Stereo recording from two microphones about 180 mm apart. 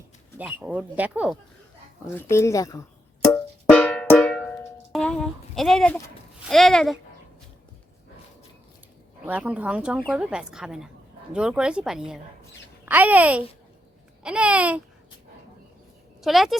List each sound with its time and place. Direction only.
0.3 s speech: 10° right (ahead or behind)
2.3 s speech: 15° left (ahead or behind)
3.3 s drum: 5° left (ahead or behind)
6.5 s speech: centre (ahead or behind)
9.2 s a child's voice: 10° right (ahead or behind)
16.2 s speech: centre (ahead or behind)